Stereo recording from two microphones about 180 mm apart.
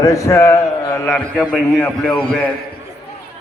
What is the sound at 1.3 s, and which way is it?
Speech, 5° right (ahead or behind).